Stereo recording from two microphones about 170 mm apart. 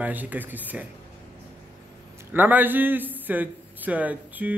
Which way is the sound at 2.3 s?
10° right (ahead or behind).